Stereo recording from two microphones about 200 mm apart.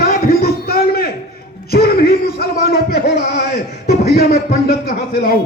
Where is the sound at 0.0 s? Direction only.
50° left (ahead or behind).